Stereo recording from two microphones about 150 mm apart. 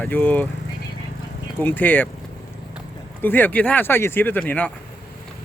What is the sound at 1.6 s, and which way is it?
Speech, 10° left (ahead or behind).